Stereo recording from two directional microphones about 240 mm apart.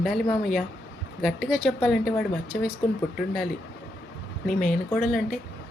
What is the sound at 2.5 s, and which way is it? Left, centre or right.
Speech, left.